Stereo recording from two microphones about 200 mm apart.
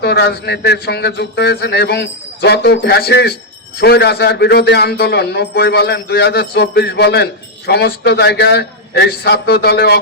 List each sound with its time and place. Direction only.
0.0 s speech: 55° left (ahead or behind)